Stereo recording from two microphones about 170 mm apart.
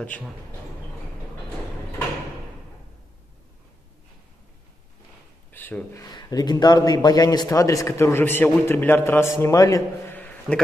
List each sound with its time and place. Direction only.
5.5 s speech: 10° left (ahead or behind)
6.0 s a man's voice: 25° left (ahead or behind)